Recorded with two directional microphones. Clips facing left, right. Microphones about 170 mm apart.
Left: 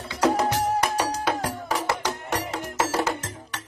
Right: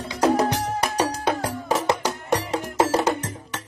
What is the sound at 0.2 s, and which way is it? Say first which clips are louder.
Music: right 2 dB; 10° right (ahead or behind).